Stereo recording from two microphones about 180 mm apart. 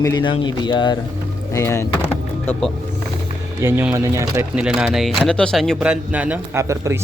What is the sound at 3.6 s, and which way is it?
Speech, 10° right (ahead or behind).